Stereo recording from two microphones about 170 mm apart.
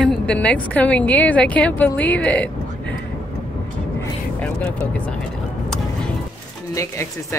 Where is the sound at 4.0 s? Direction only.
5° left (ahead or behind).